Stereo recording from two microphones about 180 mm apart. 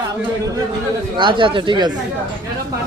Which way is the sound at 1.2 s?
25° right (ahead or behind).